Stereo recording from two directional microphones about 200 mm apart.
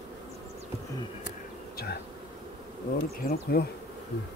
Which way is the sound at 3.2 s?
50° left (ahead or behind).